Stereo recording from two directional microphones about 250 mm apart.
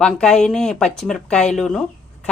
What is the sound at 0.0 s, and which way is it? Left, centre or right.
Speech, centre.